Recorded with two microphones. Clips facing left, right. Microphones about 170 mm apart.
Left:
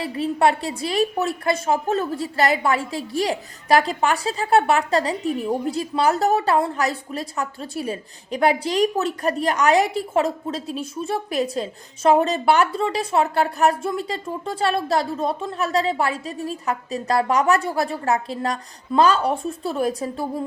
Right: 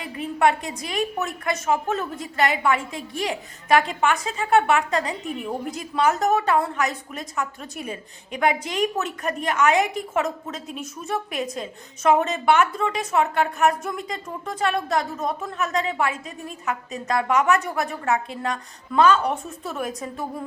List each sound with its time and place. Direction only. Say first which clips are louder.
0.0 s a woman's voice: left 2 dB; 30° left (ahead or behind)